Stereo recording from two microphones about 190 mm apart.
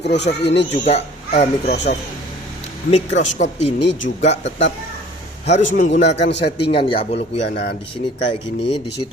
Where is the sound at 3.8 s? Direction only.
75° left (ahead or behind).